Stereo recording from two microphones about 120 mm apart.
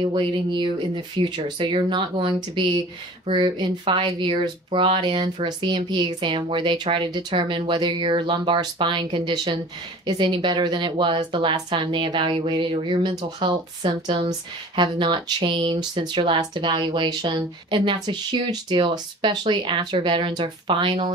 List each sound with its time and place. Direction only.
0.0 s speech: 40° right (ahead or behind)